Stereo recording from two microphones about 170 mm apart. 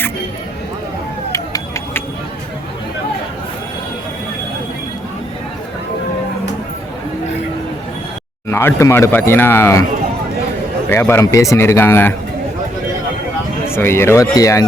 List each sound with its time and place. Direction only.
1.3 s a sound: 15° left (ahead or behind)
8.4 s speech: 15° left (ahead or behind)
10.8 s speech: 10° left (ahead or behind)
13.7 s speech: 15° left (ahead or behind)